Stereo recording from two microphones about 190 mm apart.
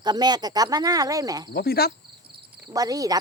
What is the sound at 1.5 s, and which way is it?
Speech, 55° left (ahead or behind).